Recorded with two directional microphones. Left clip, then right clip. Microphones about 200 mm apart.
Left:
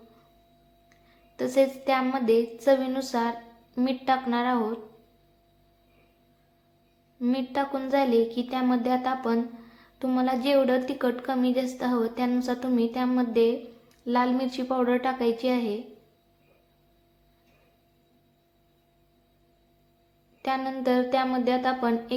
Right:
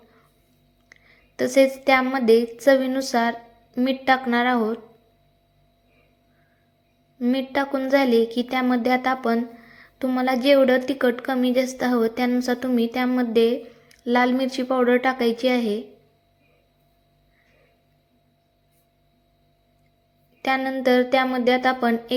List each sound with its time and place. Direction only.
1.4 s speech: 25° right (ahead or behind)
7.2 s speech: 25° right (ahead or behind)
20.4 s speech: 25° right (ahead or behind)